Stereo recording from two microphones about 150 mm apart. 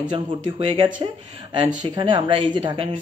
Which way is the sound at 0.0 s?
35° right (ahead or behind).